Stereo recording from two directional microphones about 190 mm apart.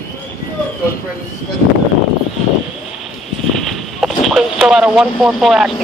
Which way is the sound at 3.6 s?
Centre (ahead or behind).